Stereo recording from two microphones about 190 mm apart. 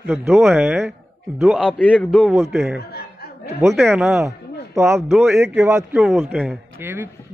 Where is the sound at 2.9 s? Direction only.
55° left (ahead or behind).